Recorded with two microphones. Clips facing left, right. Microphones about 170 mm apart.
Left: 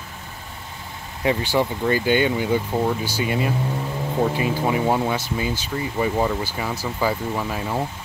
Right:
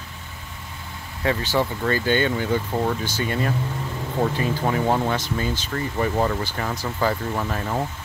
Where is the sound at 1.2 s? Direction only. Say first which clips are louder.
Left 2 dB; 15° left (ahead or behind).